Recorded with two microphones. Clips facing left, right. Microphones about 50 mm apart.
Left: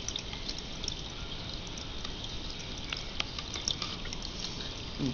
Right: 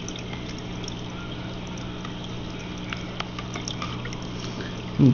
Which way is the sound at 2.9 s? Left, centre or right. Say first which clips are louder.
Right 4 dB; right.